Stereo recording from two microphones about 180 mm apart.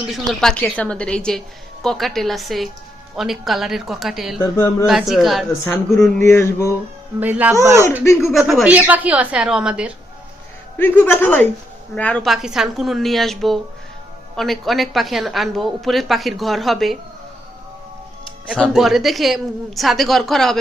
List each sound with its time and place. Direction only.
0.1 s a woman's voice: centre (ahead or behind)
7.2 s speech: 10° right (ahead or behind)
8.2 s a woman's voice: centre (ahead or behind)
10.8 s a man's voice: 10° left (ahead or behind)
18.5 s a woman's voice: centre (ahead or behind)